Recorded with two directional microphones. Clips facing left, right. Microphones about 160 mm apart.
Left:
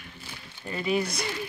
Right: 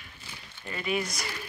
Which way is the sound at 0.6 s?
30° left (ahead or behind).